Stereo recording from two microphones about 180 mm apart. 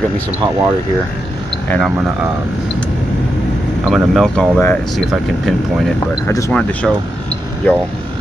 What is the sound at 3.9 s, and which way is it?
Speech, centre (ahead or behind).